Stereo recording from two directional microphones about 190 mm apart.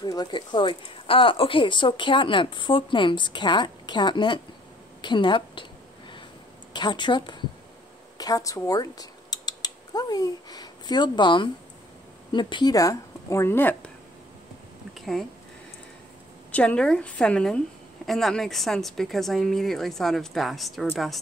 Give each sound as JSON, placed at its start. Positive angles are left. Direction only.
{"t": 0.0, "sound": "a woman's voice", "side_deg": 20}
{"t": 6.7, "sound": "speech", "side_deg": 25}
{"t": 15.0, "sound": "speech", "side_deg": 0}
{"t": 16.5, "sound": "speech", "side_deg": 5}